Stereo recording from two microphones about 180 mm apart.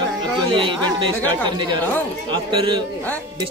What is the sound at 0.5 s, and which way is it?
Speech, 30° right (ahead or behind).